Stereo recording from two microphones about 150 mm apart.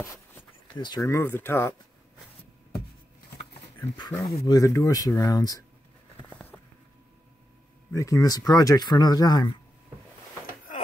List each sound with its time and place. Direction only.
0.7 s speech: 30° left (ahead or behind)
1.0 s speech: 15° left (ahead or behind)
3.9 s speech: 25° left (ahead or behind)
7.9 s speech: 20° left (ahead or behind)